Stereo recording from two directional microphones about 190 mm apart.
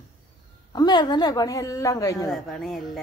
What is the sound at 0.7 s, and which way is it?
Speech, 20° left (ahead or behind).